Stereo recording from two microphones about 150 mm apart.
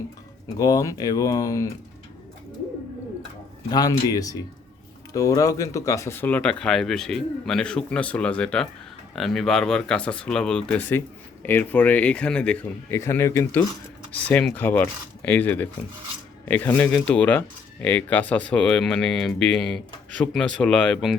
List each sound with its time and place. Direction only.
0.6 s speech: 25° left (ahead or behind)
3.7 s speech: 25° left (ahead or behind); by 21.2 s 5° left (ahead or behind)